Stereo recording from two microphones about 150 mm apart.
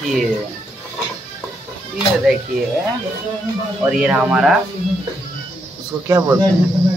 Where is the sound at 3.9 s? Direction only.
5° right (ahead or behind).